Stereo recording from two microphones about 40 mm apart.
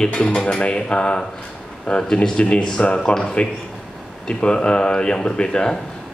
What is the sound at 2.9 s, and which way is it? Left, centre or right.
Speech, centre.